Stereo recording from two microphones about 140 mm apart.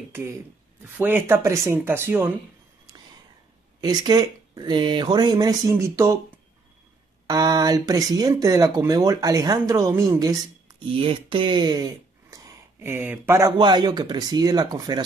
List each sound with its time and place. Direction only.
0.9 s speech: 15° right (ahead or behind)
3.8 s speech: 30° right (ahead or behind)
7.2 s speech: 25° right (ahead or behind)
13.5 s speech: 30° right (ahead or behind)